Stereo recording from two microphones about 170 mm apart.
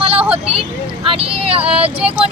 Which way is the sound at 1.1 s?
35° right (ahead or behind).